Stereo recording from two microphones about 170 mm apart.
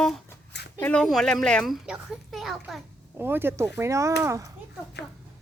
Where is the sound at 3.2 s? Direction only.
15° right (ahead or behind).